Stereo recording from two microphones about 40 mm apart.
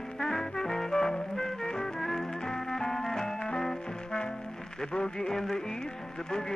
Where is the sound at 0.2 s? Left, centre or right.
Centre.